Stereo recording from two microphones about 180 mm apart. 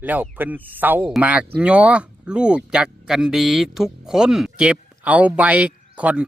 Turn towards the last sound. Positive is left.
turn(degrees=-10)  # may be behind; listen again after turning